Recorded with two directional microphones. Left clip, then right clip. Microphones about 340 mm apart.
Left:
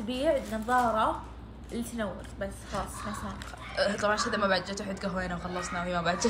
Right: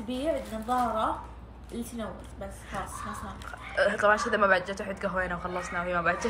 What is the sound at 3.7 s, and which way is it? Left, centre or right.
A woman's voice, centre.